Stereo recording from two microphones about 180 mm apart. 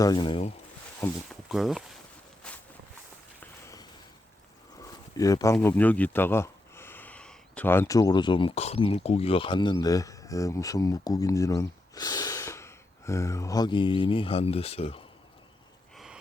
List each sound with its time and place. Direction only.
0.0 s speech: 25° left (ahead or behind)
1.3 s speech: centre (ahead or behind)
2.4 s walk: 5° left (ahead or behind)
3.4 s walk: 15° left (ahead or behind)
4.8 s a sound: 20° left (ahead or behind)
5.5 s speech: 10° left (ahead or behind); by 15.0 s 35° left (ahead or behind)